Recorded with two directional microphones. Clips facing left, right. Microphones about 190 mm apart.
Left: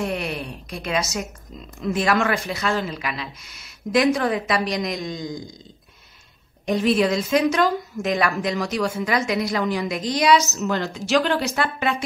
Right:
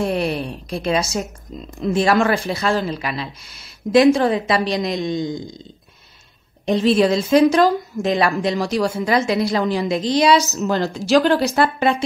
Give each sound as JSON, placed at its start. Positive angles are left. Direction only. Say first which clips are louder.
{"t": 0.0, "sound": "a woman's voice", "louder": "right 6 dB", "side_deg": -30}
{"t": 6.6, "sound": "a woman's voice", "louder": "right 4 dB", "side_deg": -30}